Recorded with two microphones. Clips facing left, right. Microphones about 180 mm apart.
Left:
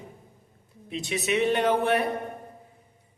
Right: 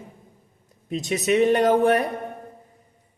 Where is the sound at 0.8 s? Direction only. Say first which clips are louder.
Right 6 dB; 40° right (ahead or behind).